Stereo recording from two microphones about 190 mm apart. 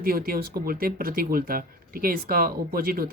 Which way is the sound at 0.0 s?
50° right (ahead or behind).